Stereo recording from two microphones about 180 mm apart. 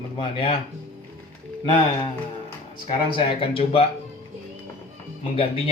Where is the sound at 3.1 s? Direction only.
30° left (ahead or behind).